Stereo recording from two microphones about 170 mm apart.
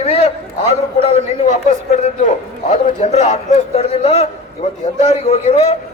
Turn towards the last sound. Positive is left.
turn(degrees=40)  # may be behind; listen again after turning